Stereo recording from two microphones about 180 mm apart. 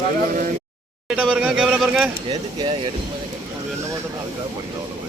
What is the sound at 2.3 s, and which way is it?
Speech, 25° right (ahead or behind).